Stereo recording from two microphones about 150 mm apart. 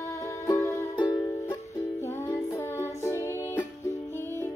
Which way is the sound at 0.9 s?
30° left (ahead or behind).